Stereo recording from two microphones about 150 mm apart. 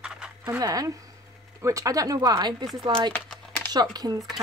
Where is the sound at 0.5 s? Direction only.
25° right (ahead or behind).